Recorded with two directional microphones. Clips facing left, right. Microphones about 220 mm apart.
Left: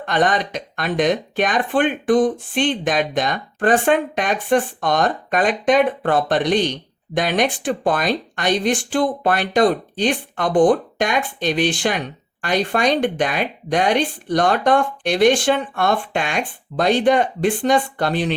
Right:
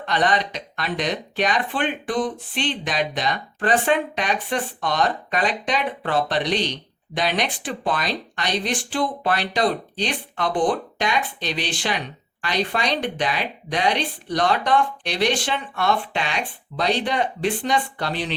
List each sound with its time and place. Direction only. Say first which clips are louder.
0.0 s speech: left 3 dB; 50° left (ahead or behind)